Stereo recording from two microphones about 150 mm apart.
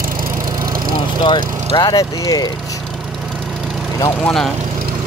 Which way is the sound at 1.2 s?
30° left (ahead or behind).